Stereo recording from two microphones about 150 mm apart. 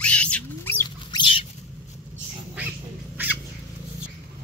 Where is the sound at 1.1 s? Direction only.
35° left (ahead or behind).